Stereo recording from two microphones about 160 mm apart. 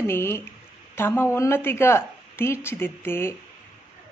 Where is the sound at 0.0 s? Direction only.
15° left (ahead or behind).